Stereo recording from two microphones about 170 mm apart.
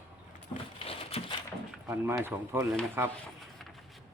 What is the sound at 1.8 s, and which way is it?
Speech, 15° right (ahead or behind).